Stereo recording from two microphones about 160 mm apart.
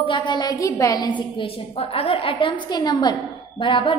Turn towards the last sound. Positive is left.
turn(degrees=30)  # may be behind; listen again after turning